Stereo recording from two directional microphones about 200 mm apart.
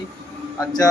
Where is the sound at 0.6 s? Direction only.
20° left (ahead or behind).